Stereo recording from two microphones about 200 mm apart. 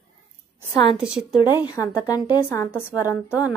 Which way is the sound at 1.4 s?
20° left (ahead or behind).